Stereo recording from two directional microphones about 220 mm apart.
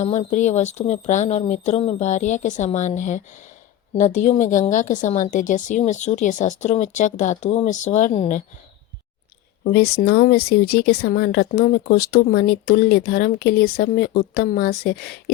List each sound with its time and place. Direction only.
0.0 s a woman's voice: 30° left (ahead or behind)
9.7 s speech: 45° left (ahead or behind)